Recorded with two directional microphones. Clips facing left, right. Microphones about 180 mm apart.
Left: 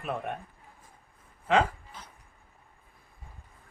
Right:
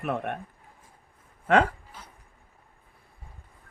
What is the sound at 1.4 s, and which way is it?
Speech, 60° right (ahead or behind).